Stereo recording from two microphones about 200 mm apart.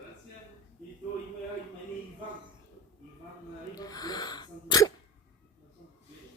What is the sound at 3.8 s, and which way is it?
Sneeze, 20° left (ahead or behind).